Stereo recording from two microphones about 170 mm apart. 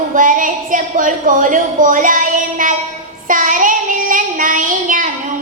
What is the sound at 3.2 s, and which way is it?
Child singing, 50° right (ahead or behind).